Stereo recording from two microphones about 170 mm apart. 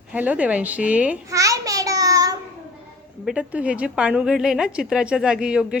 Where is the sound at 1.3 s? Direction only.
20° right (ahead or behind).